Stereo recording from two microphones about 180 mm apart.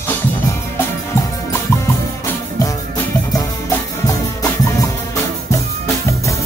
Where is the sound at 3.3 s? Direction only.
20° left (ahead or behind).